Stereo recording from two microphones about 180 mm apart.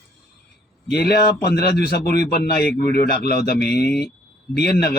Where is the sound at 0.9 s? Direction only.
60° left (ahead or behind).